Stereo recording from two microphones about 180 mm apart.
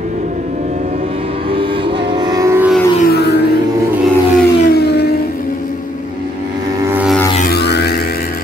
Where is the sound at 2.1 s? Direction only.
25° right (ahead or behind).